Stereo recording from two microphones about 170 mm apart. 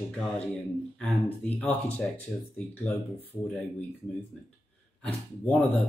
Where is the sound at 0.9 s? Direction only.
5° left (ahead or behind).